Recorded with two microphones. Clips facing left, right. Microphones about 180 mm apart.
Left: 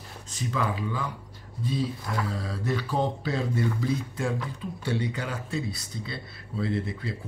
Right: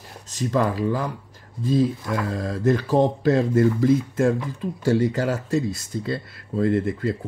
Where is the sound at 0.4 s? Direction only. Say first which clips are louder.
Right 8 dB; 45° right (ahead or behind).